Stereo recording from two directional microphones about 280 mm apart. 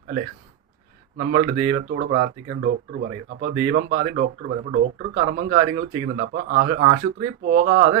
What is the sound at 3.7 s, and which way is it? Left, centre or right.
Speech, right.